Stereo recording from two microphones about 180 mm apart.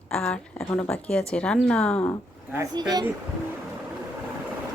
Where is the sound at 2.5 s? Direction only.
20° right (ahead or behind).